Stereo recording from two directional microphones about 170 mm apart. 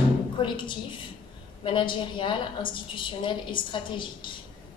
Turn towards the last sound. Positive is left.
turn(degrees=30)  # may be behind; listen again after turning